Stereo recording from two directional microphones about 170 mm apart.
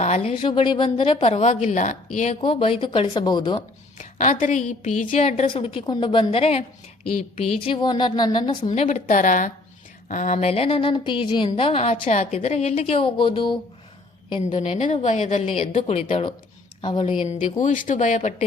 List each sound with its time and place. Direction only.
0.0 s a woman's voice: 40° left (ahead or behind)
2.4 s a woman's voice: 35° left (ahead or behind)
3.9 s a woman's voice: 45° left (ahead or behind); by 8.7 s 25° left (ahead or behind)
8.7 s a woman's voice: 40° left (ahead or behind)
14.4 s a woman's voice: 40° left (ahead or behind)
17.4 s a woman's voice: 45° left (ahead or behind)